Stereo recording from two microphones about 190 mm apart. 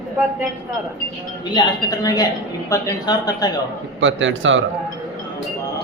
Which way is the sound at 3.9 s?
80° right.